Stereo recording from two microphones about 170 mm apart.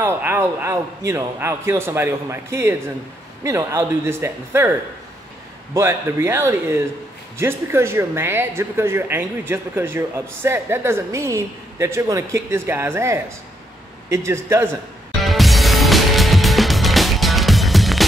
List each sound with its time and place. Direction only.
0.0 s speech: 10° right (ahead or behind)
5.8 s speech: 15° right (ahead or behind)
15.2 s music: centre (ahead or behind)